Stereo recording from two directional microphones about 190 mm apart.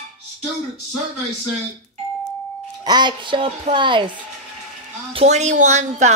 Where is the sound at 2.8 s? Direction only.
25° right (ahead or behind).